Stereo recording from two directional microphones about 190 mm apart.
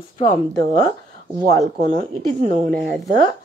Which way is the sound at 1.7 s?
40° right (ahead or behind).